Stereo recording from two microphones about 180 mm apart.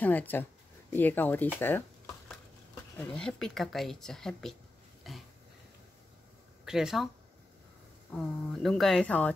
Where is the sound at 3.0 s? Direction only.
5° left (ahead or behind).